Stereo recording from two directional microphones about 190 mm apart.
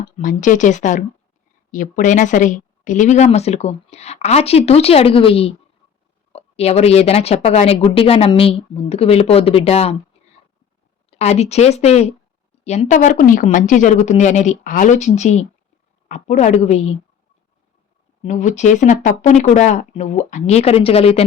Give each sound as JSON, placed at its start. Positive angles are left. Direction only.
{"t": 0.2, "sound": "speech", "side_deg": 40}
{"t": 11.1, "sound": "speech", "side_deg": 35}
{"t": 18.2, "sound": "speech", "side_deg": 40}